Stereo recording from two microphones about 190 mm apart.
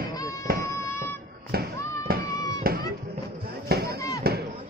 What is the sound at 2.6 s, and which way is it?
Music, 50° right (ahead or behind).